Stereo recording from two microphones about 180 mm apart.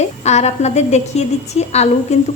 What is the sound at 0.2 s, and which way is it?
A woman's voice, 40° left (ahead or behind).